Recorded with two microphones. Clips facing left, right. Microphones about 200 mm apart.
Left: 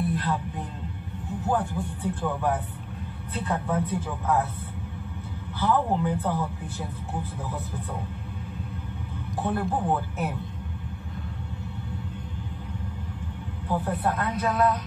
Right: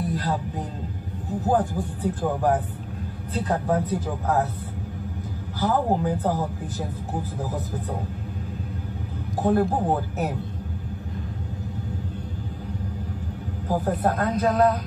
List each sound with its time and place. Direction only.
0.0 s speech: 35° right (ahead or behind)
5.6 s speech: 35° right (ahead or behind)
9.4 s speech: 40° right (ahead or behind)
13.7 s speech: 40° right (ahead or behind)